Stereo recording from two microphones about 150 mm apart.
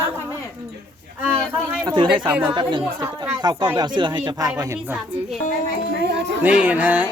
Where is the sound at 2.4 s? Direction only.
30° right (ahead or behind).